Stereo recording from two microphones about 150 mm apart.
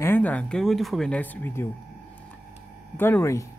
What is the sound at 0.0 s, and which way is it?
Speech, 10° left (ahead or behind).